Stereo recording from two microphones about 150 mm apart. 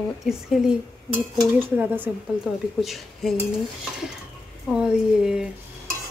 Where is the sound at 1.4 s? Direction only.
10° right (ahead or behind).